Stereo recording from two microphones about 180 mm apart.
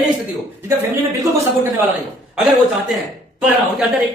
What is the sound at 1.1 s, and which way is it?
Speech, 15° right (ahead or behind).